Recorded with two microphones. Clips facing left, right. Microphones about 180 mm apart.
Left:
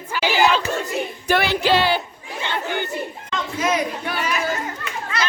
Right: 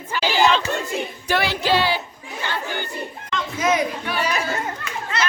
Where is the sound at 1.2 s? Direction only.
55° left (ahead or behind).